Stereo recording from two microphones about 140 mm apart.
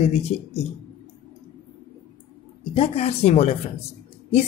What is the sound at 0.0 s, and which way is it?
Speech, 45° left (ahead or behind).